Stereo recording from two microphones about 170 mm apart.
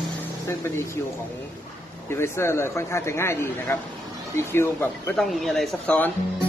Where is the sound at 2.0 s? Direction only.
15° left (ahead or behind).